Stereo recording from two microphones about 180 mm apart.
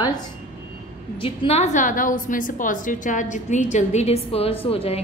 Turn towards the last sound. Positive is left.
turn(degrees=35)  # may be behind; listen again after turning